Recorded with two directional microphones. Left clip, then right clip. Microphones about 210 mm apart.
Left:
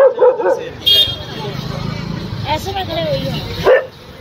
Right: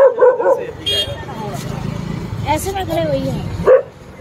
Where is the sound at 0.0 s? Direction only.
30° left (ahead or behind).